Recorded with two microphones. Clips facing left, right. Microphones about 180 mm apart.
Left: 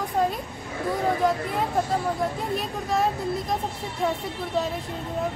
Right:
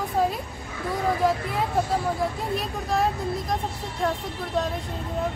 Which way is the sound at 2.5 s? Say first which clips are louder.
Even; centre (ahead or behind).